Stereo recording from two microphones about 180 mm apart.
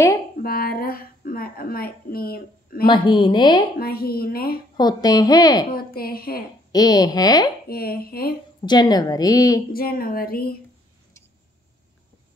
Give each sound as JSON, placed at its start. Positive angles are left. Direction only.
{"t": 0.4, "sound": "a woman's voice", "side_deg": 55}
{"t": 2.9, "sound": "a woman's voice", "side_deg": 25}
{"t": 3.7, "sound": "speech", "side_deg": 55}
{"t": 4.7, "sound": "a woman's voice", "side_deg": 20}
{"t": 5.7, "sound": "speech", "side_deg": 55}
{"t": 6.7, "sound": "a woman's voice", "side_deg": 20}
{"t": 7.6, "sound": "speech", "side_deg": 55}
{"t": 8.6, "sound": "a woman's voice", "side_deg": 25}
{"t": 9.7, "sound": "speech", "side_deg": 55}